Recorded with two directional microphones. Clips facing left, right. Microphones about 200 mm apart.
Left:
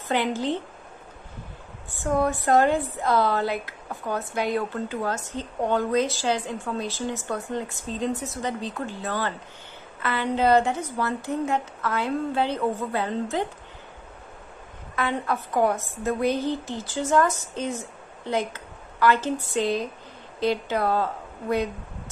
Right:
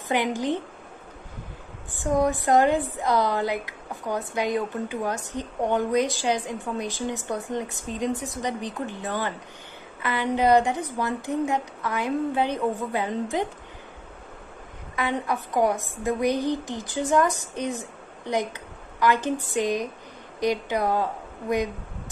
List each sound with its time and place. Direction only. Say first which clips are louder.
0.1 s speech: even; 15° right (ahead or behind)
2.0 s speech: right 1 dB; 15° right (ahead or behind)
15.0 s a woman's voice: even; 15° right (ahead or behind)